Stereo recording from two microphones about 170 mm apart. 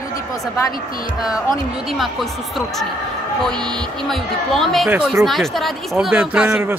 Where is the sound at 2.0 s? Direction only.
Centre (ahead or behind).